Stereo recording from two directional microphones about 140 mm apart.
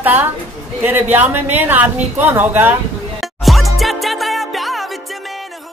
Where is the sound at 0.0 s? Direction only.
15° right (ahead or behind).